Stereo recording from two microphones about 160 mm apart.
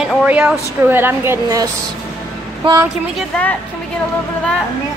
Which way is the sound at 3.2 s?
10° left (ahead or behind).